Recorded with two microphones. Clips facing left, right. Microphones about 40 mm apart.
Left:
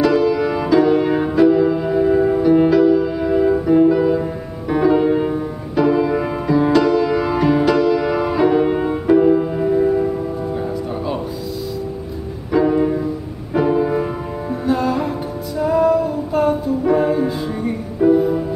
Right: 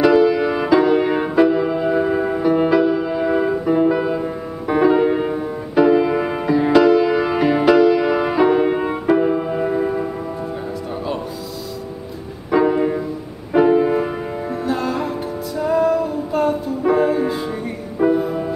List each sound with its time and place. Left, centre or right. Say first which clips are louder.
0.0 s music: right 2 dB; centre
12.5 s music: left 1 dB; centre
14.7 s music: left 4 dB; centre